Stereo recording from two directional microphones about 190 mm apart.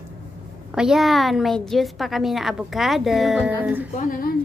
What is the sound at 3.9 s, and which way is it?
Speech, 45° left (ahead or behind).